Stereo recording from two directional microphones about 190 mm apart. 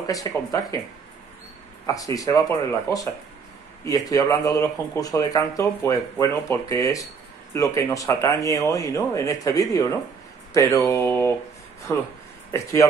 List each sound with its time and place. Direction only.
0.0 s speech: 20° left (ahead or behind)
1.9 s speech: 20° left (ahead or behind)
3.8 s speech: 20° left (ahead or behind)